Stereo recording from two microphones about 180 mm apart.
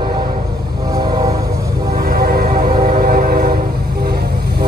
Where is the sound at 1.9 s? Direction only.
55° right (ahead or behind).